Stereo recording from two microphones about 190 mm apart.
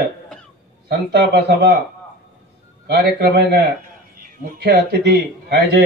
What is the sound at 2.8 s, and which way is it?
A man's voice, 60° right (ahead or behind).